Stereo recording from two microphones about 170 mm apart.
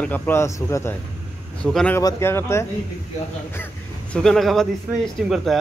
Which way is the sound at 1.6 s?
Centre (ahead or behind).